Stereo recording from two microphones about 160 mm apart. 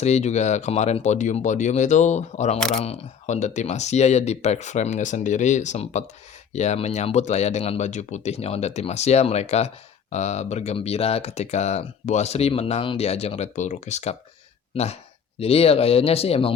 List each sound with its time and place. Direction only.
0.0 s speech: 45° left (ahead or behind)
15.4 s speech: 40° left (ahead or behind)